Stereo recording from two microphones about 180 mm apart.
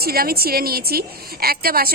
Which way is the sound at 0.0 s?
55° right (ahead or behind).